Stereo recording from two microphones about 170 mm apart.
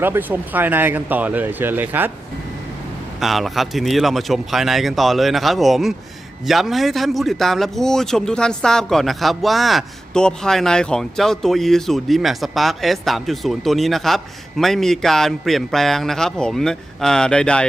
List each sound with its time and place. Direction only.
0.0 s speech: 10° right (ahead or behind)
3.2 s a man's voice: centre (ahead or behind)